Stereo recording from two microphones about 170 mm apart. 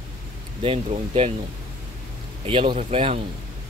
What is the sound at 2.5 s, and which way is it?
Speech, 30° right (ahead or behind).